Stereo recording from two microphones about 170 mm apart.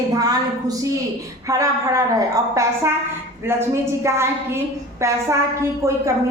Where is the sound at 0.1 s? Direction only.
20° right (ahead or behind).